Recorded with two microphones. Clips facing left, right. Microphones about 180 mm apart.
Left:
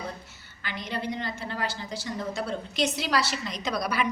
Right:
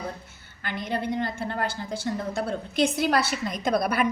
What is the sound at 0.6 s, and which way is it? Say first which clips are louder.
A woman's voice: right 4 dB; 55° right (ahead or behind).